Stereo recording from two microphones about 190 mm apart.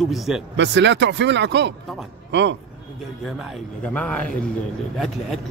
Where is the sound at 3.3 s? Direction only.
Centre (ahead or behind).